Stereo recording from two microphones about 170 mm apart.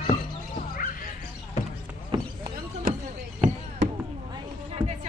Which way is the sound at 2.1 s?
30° right (ahead or behind).